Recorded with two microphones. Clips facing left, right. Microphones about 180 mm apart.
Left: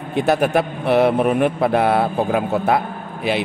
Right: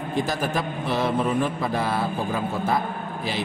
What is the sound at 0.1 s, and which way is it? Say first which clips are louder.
Speech: left 9 dB; 65° left (ahead or behind).